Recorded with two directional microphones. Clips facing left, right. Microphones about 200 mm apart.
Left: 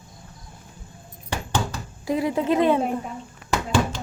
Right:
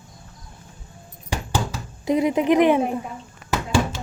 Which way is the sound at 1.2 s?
5° right (ahead or behind).